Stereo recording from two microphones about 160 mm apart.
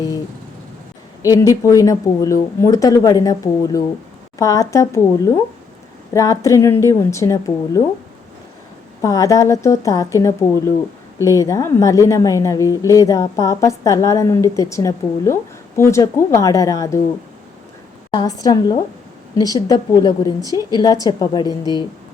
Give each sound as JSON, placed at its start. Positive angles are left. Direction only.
{"t": 1.3, "sound": "speech", "side_deg": 20}
{"t": 9.0, "sound": "speech", "side_deg": 20}
{"t": 18.1, "sound": "speech", "side_deg": 25}